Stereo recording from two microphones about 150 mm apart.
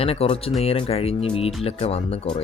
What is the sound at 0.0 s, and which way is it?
Speech, 40° left (ahead or behind).